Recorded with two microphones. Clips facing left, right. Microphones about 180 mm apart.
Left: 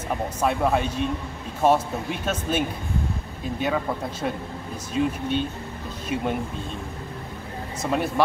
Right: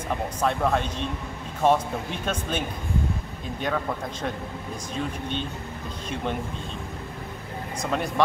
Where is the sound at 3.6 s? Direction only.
5° left (ahead or behind).